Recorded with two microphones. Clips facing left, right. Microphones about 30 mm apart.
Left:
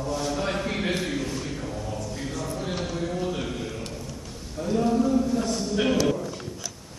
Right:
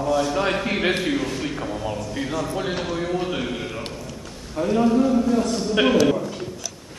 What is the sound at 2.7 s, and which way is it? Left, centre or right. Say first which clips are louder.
Speech: right 4 dB; right.